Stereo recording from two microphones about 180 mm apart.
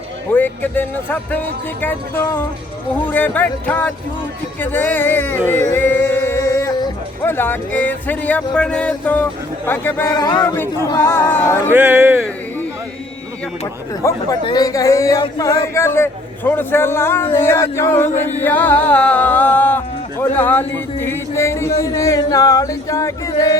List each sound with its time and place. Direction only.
0.3 s speech: 10° left (ahead or behind)
5.5 s music: 10° left (ahead or behind)
7.2 s speech: 10° left (ahead or behind)
10.4 s speech: 10° left (ahead or behind)
11.7 s speech: 10° right (ahead or behind)
14.0 s speech: 15° left (ahead or behind)